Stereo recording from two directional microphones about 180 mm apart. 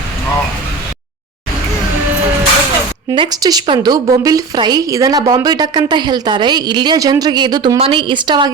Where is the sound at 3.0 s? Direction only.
25° right (ahead or behind).